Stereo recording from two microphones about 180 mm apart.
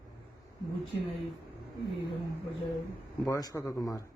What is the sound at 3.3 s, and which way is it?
Speech, 20° left (ahead or behind).